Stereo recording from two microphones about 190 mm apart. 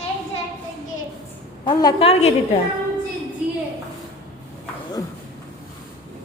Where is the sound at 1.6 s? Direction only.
25° left (ahead or behind).